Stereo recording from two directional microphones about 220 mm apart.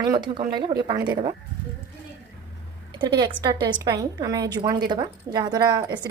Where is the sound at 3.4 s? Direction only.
20° right (ahead or behind).